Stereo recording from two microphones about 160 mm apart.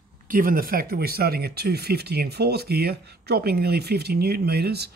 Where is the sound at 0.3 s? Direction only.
60° right (ahead or behind).